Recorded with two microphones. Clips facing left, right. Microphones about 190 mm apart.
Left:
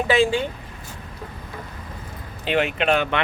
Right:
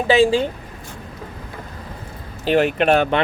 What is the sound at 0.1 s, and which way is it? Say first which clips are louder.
Speech: right 5 dB; 35° right (ahead or behind).